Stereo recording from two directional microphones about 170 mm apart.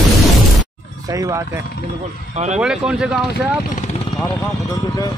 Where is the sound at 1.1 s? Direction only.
20° right (ahead or behind).